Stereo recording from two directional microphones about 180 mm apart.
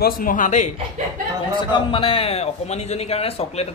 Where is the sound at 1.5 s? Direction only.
25° left (ahead or behind).